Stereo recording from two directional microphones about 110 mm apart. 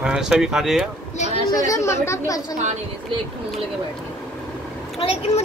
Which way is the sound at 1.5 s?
35° left (ahead or behind).